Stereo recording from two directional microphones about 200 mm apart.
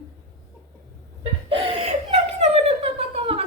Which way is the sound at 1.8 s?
35° right (ahead or behind).